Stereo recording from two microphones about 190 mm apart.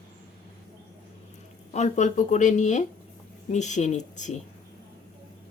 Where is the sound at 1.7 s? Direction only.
40° left (ahead or behind).